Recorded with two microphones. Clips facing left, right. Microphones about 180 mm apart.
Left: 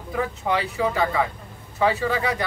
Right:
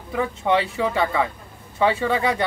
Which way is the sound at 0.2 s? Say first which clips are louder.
Right 4 dB; 25° right (ahead or behind).